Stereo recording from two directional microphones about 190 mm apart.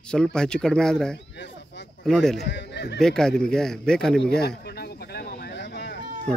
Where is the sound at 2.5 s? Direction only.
65° left (ahead or behind).